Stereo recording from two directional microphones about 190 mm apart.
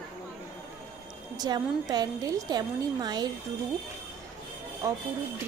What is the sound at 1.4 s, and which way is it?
Speech, 20° right (ahead or behind).